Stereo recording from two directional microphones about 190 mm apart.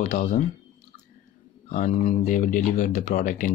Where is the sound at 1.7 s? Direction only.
40° left (ahead or behind).